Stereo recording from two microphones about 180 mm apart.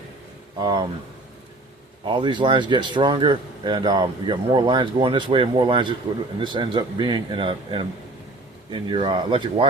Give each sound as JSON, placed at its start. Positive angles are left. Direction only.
{"t": 0.6, "sound": "a man's voice", "side_deg": -25}
{"t": 2.0, "sound": "a man's voice", "side_deg": -25}